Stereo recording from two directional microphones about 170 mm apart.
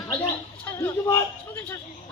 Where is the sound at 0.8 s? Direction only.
15° left (ahead or behind).